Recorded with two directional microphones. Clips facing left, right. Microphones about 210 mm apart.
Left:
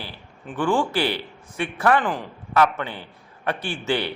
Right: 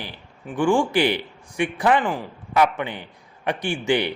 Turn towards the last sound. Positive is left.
turn(degrees=-15)  # may be behind; listen again after turning